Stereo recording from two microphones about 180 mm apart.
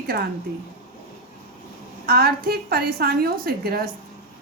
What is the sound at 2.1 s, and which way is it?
Speech, 60° right (ahead or behind).